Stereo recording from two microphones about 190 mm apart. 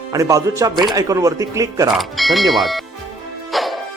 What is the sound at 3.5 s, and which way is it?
Music, centre (ahead or behind).